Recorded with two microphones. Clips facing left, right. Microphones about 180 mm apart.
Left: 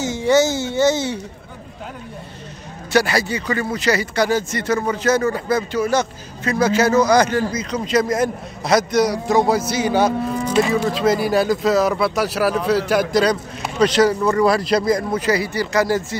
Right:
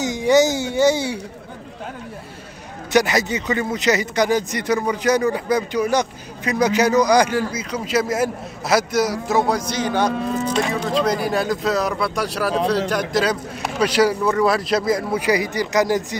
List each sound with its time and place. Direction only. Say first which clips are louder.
0.0 s speech: even; 15° right (ahead or behind)
2.9 s speech: even; 20° right (ahead or behind); by 13.2 s 5° left (ahead or behind)
13.2 s speech: left 3 dB; 5° right (ahead or behind)